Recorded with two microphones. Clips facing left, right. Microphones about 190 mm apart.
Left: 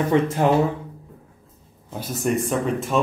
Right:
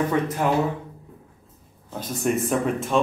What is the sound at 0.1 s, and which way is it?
Speech, 25° left (ahead or behind).